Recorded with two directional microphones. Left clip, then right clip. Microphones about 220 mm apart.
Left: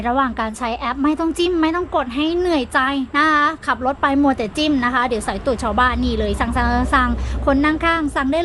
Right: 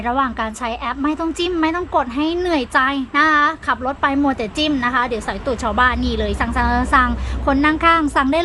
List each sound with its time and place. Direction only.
0.0 s a woman's voice: 5° left (ahead or behind)